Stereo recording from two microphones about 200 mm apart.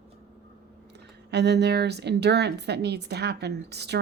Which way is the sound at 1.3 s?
55° right (ahead or behind).